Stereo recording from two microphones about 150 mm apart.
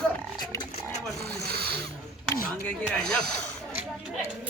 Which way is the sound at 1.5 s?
90° right.